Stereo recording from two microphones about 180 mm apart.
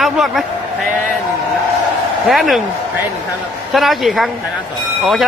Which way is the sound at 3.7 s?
Centre (ahead or behind).